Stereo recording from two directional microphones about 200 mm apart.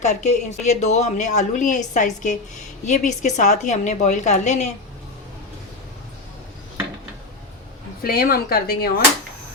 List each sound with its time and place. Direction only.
0.0 s a woman's voice: 35° left (ahead or behind)
8.0 s speech: 50° left (ahead or behind)